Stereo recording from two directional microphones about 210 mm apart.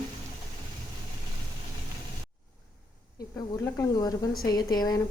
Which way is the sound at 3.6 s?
15° left (ahead or behind).